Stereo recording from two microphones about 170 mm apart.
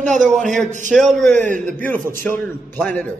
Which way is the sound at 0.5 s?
45° right (ahead or behind).